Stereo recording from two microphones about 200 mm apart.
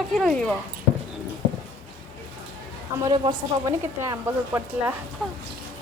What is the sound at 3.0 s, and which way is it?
Speech, 25° right (ahead or behind).